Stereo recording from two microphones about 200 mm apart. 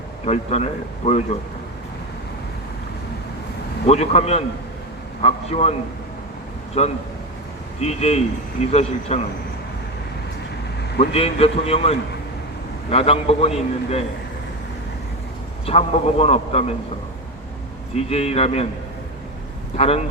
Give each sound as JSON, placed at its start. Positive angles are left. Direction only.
{"t": 0.3, "sound": "a man's voice", "side_deg": 35}
{"t": 3.8, "sound": "a man's voice", "side_deg": 30}
{"t": 6.8, "sound": "a man's voice", "side_deg": 35}
{"t": 11.1, "sound": "a man's voice", "side_deg": 30}
{"t": 15.6, "sound": "a man's voice", "side_deg": 30}
{"t": 17.9, "sound": "a man's voice", "side_deg": 30}
{"t": 19.7, "sound": "a man's voice", "side_deg": 30}